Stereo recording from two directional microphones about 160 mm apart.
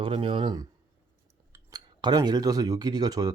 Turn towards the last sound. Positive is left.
turn(degrees=-25)  # may be behind; listen again after turning